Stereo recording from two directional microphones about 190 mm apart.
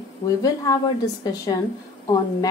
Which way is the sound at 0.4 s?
20° left (ahead or behind).